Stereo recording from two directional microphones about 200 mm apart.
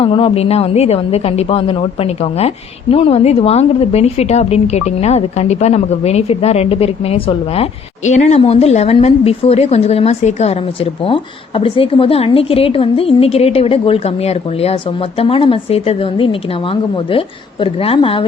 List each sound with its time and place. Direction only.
0.0 s a woman's voice: 25° left (ahead or behind)